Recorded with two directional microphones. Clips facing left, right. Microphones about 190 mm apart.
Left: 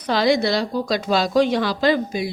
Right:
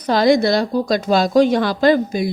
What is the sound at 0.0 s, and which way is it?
A woman's voice, 45° right (ahead or behind).